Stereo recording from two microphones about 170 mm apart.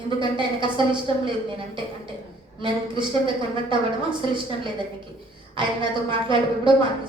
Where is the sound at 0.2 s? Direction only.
30° right (ahead or behind).